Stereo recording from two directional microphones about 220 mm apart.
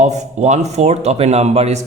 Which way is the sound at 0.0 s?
30° right (ahead or behind).